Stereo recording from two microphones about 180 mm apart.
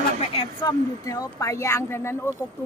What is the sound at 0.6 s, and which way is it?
Speech, 20° left (ahead or behind).